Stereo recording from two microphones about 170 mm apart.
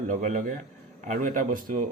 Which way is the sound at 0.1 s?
45° right (ahead or behind).